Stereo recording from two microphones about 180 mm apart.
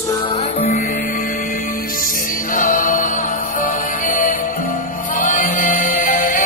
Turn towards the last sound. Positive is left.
turn(degrees=50)  # may be behind; listen again after turning